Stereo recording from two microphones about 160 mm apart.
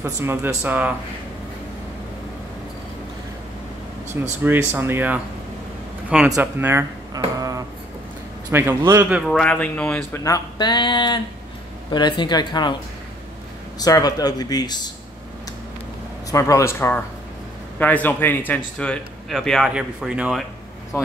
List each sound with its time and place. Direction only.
0.0 s speech: 15° right (ahead or behind)
4.4 s a man's voice: 10° right (ahead or behind)
6.3 s speech: 15° right (ahead or behind)
7.3 s a sound: 20° right (ahead or behind)
8.5 s speech: 15° right (ahead or behind)
9.1 s speech: centre (ahead or behind); by 12.7 s 25° left (ahead or behind)
13.7 s speech: 25° left (ahead or behind)
16.3 s speech: 20° left (ahead or behind); by 20.4 s 5° right (ahead or behind)